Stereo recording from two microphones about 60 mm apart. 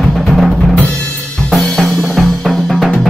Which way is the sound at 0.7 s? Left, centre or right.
Left.